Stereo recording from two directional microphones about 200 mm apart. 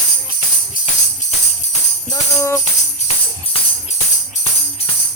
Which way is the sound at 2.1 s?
15° left (ahead or behind).